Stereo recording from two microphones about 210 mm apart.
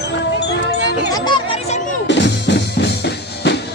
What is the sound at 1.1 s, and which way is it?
Music, 20° left (ahead or behind).